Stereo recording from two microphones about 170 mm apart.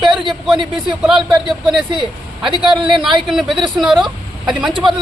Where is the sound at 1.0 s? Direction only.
5° right (ahead or behind).